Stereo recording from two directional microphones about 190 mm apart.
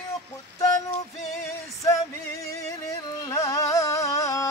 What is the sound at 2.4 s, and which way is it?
Carnatic music, 20° left (ahead or behind).